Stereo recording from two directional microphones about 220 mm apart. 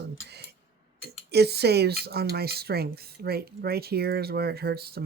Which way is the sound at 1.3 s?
50° right (ahead or behind).